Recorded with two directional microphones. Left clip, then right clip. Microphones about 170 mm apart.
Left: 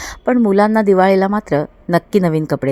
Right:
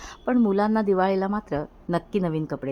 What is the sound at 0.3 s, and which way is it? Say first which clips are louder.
A woman's voice: left 9 dB; 30° left (ahead or behind).